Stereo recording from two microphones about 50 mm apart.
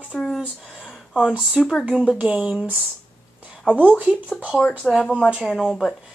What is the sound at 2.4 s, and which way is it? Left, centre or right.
Speech, centre.